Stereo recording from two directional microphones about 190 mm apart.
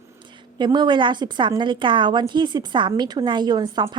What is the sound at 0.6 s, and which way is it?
A woman's voice, 25° right (ahead or behind).